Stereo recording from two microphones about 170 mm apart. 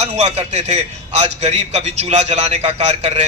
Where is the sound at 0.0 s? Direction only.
40° right (ahead or behind).